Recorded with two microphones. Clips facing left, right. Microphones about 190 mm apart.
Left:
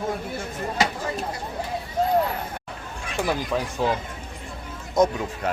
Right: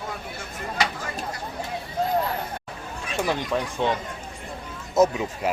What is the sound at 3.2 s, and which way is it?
Speech, centre (ahead or behind).